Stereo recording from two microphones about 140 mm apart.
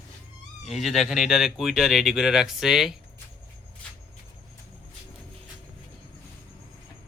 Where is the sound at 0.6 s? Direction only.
Centre (ahead or behind).